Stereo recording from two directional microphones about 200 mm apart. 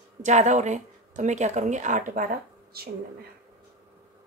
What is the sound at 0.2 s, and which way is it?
A woman's voice, 35° right (ahead or behind).